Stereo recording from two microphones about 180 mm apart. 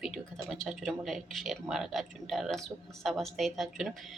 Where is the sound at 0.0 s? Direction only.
Centre (ahead or behind).